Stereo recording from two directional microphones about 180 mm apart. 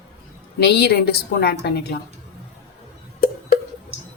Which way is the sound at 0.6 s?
65° left (ahead or behind).